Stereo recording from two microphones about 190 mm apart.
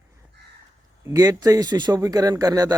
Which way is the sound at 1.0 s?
20° right (ahead or behind).